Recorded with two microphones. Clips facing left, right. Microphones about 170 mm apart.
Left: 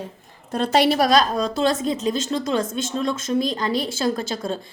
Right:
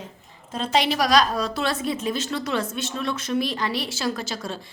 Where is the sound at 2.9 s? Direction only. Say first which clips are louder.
Left 3 dB; 25° left (ahead or behind).